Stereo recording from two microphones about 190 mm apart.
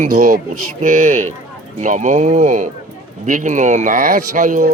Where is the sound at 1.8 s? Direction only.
40° right (ahead or behind).